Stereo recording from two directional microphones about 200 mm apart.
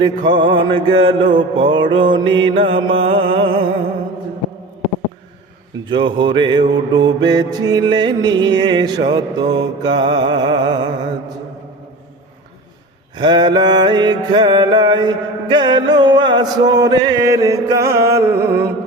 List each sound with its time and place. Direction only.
0.0 s mantra: 20° right (ahead or behind)
5.8 s mantra: 25° right (ahead or behind)
13.1 s mantra: 20° right (ahead or behind)